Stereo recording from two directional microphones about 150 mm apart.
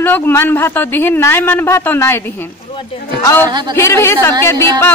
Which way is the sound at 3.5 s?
30° right (ahead or behind).